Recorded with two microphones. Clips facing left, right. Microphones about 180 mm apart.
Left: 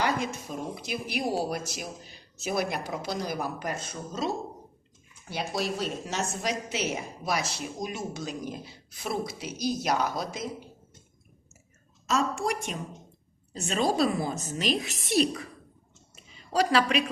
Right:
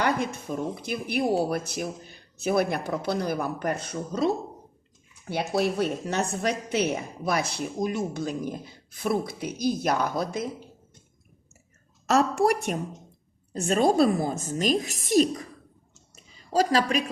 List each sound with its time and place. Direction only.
0.0 s a woman's voice: 55° right (ahead or behind)
12.0 s a woman's voice: 65° right (ahead or behind); by 15.4 s 45° right (ahead or behind)
16.5 s a woman's voice: 40° right (ahead or behind)